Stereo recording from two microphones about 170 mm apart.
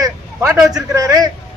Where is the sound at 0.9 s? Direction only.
20° right (ahead or behind).